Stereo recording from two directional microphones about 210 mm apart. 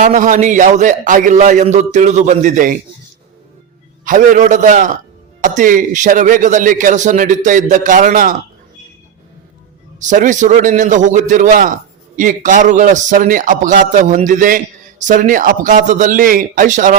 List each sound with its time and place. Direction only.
0.0 s a man's voice: 35° right (ahead or behind)
4.0 s a man's voice: 40° right (ahead or behind)
10.0 s a man's voice: 35° right (ahead or behind)